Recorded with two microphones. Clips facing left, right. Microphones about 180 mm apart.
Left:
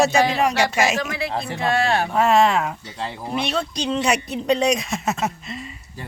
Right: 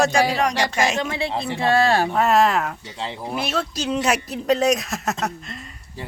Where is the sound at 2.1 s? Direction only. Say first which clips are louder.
Left 1 dB; centre (ahead or behind).